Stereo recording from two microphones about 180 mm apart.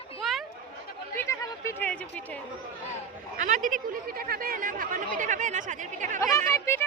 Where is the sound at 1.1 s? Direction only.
15° left (ahead or behind).